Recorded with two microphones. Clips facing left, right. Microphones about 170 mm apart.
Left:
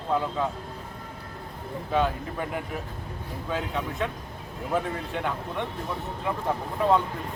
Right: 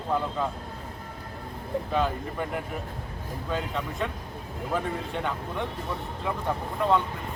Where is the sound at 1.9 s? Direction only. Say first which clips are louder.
Left 3 dB; centre (ahead or behind).